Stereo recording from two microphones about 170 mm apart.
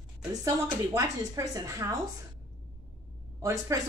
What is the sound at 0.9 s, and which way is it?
Speech, 20° right (ahead or behind).